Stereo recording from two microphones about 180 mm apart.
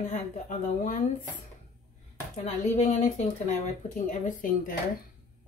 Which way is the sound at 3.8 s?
45° left (ahead or behind).